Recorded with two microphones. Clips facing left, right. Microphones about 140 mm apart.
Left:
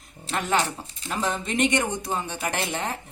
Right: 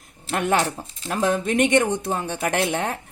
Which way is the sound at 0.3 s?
55° right (ahead or behind).